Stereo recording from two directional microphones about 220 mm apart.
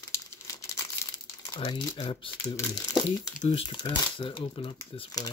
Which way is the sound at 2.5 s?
15° left (ahead or behind).